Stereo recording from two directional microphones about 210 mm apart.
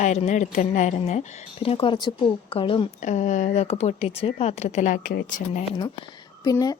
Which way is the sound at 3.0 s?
35° left (ahead or behind).